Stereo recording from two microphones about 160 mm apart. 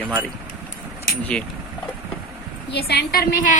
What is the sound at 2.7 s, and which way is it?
Speech, 90° left.